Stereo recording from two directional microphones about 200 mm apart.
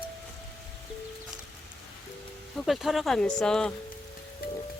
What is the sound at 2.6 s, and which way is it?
Speech, centre (ahead or behind).